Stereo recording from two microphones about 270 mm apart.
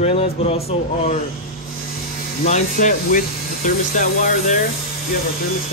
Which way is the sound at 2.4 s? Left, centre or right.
Left.